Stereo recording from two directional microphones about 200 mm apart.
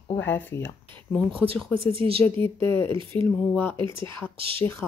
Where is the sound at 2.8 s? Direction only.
25° right (ahead or behind).